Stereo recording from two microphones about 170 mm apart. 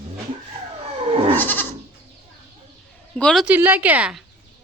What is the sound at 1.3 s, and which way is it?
Goat, 10° left (ahead or behind).